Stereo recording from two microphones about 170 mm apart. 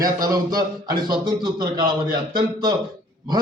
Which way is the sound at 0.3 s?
20° right (ahead or behind).